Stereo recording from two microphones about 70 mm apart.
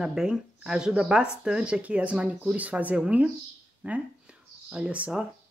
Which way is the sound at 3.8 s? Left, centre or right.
Centre.